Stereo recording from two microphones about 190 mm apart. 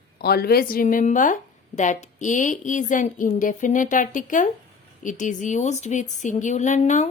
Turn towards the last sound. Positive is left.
turn(degrees=40)  # may be behind; listen again after turning